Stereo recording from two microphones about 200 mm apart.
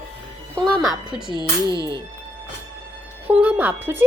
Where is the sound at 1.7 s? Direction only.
20° right (ahead or behind).